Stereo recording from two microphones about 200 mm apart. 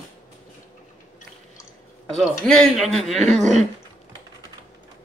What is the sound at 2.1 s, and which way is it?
Speech, centre (ahead or behind).